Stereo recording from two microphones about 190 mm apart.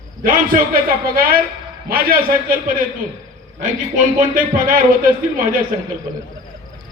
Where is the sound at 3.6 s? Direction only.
45° right (ahead or behind).